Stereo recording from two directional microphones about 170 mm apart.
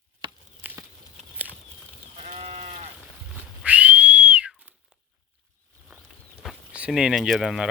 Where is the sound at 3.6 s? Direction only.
10° right (ahead or behind).